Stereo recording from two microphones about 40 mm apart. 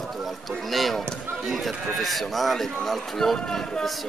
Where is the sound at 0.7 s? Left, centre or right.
Centre.